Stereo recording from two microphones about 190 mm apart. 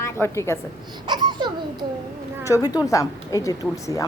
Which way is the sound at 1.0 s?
25° right (ahead or behind).